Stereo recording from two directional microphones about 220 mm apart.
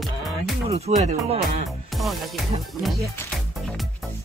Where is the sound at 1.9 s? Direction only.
Centre (ahead or behind).